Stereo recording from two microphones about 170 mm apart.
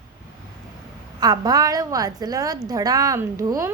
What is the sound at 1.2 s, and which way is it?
A child's voice, 25° right (ahead or behind).